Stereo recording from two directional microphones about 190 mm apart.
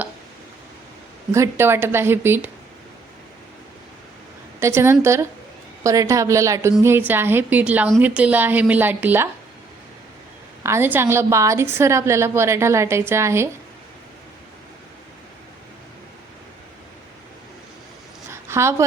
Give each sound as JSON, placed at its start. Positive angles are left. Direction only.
{"t": 1.3, "sound": "a woman's voice", "side_deg": -15}
{"t": 4.6, "sound": "a woman's voice", "side_deg": -15}
{"t": 10.6, "sound": "a woman's voice", "side_deg": -15}
{"t": 18.3, "sound": "a sound", "side_deg": -15}